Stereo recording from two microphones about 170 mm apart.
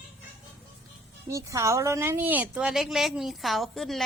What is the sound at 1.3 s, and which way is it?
A woman's voice, 20° right (ahead or behind).